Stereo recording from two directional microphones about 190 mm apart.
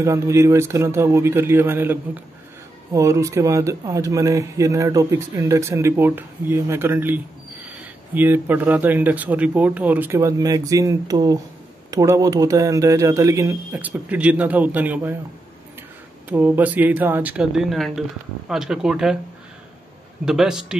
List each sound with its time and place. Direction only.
0.0 s speech: 15° right (ahead or behind)
16.3 s speech: 10° right (ahead or behind)
20.2 s speech: 5° right (ahead or behind)